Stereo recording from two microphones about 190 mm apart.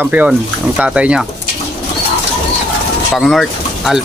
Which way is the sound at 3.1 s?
Centre (ahead or behind).